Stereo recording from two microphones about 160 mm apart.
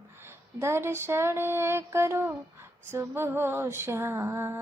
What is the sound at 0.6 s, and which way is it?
Female singing, 15° right (ahead or behind).